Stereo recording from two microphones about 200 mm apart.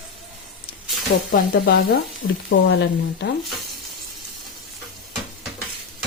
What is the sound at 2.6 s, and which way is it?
Speech, 60° left (ahead or behind).